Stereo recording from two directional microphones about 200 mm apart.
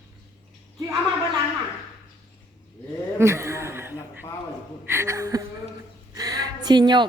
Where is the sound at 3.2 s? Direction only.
15° right (ahead or behind).